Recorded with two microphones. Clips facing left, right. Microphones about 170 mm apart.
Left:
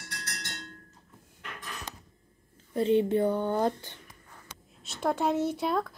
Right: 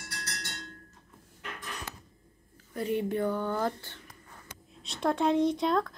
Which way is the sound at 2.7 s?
25° left (ahead or behind).